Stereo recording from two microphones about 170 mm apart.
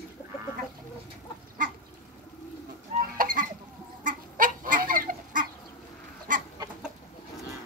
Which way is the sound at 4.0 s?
50° right (ahead or behind).